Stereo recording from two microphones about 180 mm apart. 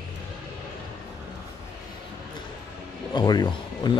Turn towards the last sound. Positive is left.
turn(degrees=20)  # may be behind; listen again after turning